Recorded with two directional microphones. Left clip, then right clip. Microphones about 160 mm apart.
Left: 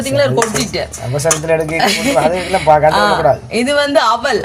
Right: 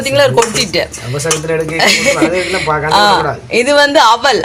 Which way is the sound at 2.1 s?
30° left (ahead or behind).